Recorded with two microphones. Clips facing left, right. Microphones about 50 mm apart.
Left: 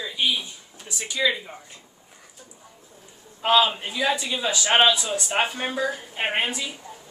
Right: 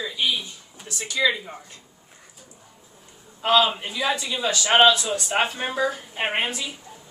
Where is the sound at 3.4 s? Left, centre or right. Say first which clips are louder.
Even; centre.